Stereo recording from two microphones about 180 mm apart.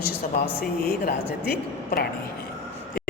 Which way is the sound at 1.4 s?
60° left (ahead or behind).